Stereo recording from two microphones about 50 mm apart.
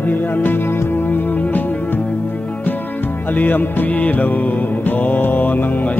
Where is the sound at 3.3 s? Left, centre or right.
Left.